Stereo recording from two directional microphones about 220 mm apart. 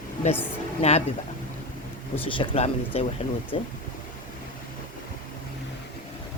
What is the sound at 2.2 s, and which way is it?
Speech, 25° left (ahead or behind).